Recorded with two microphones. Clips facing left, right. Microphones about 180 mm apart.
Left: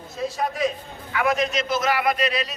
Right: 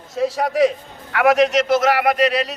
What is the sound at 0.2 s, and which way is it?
A man's voice, 90° right.